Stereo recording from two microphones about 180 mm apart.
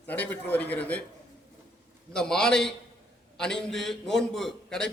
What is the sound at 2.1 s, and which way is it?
Speech, 5° left (ahead or behind).